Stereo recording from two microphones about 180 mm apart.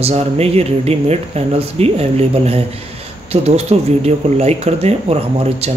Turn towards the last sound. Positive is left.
turn(degrees=-35)  # may be behind; listen again after turning